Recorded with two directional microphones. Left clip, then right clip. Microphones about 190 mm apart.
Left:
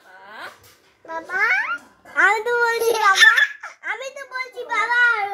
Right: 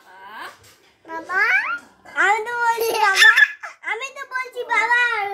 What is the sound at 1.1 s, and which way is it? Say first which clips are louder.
Babbling: right 1 dB; 15° right (ahead or behind).